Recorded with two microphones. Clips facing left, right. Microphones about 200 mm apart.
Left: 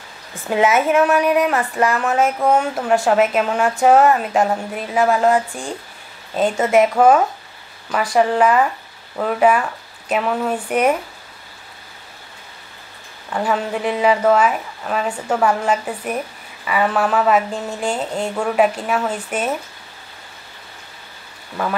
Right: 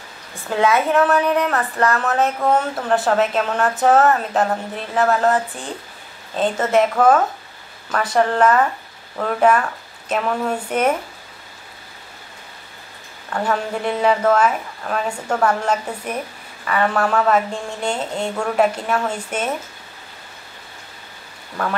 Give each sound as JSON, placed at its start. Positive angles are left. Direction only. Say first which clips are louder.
{"t": 0.5, "sound": "a woman's voice", "louder": "left 2 dB", "side_deg": 15}
{"t": 13.3, "sound": "a woman's voice", "louder": "left 1 dB", "side_deg": 5}